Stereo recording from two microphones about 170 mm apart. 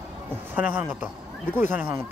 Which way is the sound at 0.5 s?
10° right (ahead or behind).